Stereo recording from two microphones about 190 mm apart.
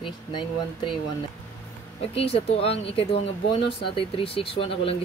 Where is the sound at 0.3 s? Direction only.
25° left (ahead or behind).